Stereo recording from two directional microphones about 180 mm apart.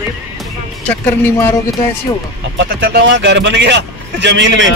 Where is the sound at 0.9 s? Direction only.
10° left (ahead or behind).